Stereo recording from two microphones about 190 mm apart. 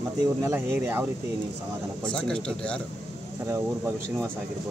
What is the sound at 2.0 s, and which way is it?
Speech, 5° left (ahead or behind).